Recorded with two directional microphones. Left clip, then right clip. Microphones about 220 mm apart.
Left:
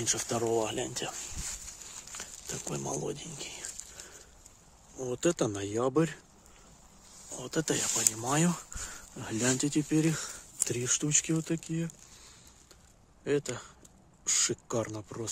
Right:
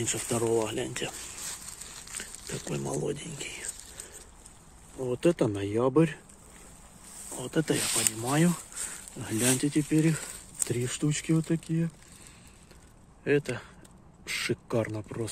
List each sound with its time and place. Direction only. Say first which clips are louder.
0.0 s speech: right 1 dB; 15° left (ahead or behind)
2.7 s speech: right 3 dB; 15° left (ahead or behind)
4.9 s speech: right 4 dB; 5° left (ahead or behind)
7.3 s speech: right 3 dB; centre (ahead or behind)
13.2 s speech: right 4 dB; 5° left (ahead or behind)